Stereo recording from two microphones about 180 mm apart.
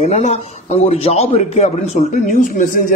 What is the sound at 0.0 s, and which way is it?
Speech, 40° left (ahead or behind).